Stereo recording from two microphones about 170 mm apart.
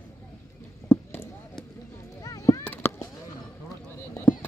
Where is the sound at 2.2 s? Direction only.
20° left (ahead or behind).